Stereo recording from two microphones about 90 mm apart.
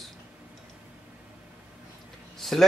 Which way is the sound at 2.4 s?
5° left (ahead or behind).